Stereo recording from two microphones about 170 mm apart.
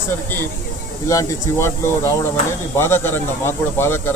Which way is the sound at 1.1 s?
15° left (ahead or behind).